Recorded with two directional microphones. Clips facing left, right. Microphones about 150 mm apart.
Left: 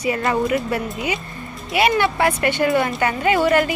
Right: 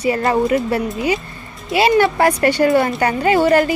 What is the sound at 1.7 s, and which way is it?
Speech, 30° right (ahead or behind).